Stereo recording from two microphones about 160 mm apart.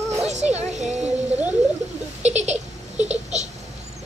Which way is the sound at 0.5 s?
45° right (ahead or behind).